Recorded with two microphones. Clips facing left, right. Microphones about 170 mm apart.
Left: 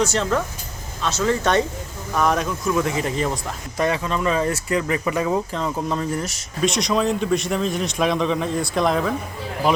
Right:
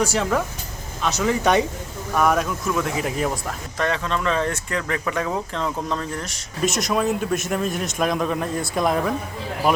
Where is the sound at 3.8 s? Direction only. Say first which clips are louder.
Left 2 dB; 10° left (ahead or behind).